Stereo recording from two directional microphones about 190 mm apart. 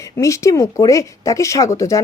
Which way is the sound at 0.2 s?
15° left (ahead or behind).